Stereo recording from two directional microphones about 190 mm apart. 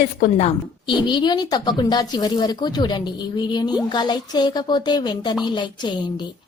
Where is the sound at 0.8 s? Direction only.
25° left (ahead or behind).